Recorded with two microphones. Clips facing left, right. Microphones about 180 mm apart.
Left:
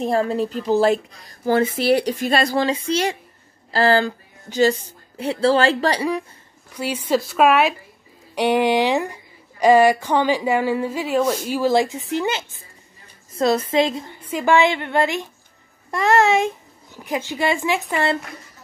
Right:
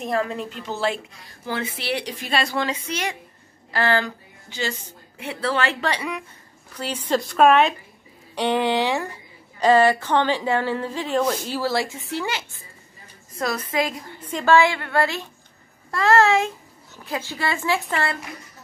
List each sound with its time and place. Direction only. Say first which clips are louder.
0.0 s speech: left 5 dB; 35° left (ahead or behind)
6.7 s a woman's voice: left 3 dB; 10° left (ahead or behind)